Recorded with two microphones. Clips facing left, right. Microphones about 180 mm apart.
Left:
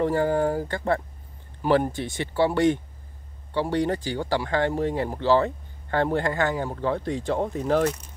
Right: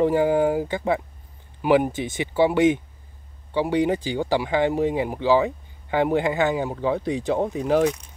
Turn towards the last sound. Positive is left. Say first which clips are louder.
# right 2 dB
turn(degrees=-10)  # may be behind; listen again after turning